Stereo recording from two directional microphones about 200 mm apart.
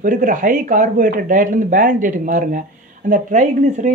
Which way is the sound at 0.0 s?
40° right (ahead or behind).